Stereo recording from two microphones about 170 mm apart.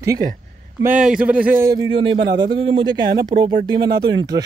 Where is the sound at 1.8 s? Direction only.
30° right (ahead or behind).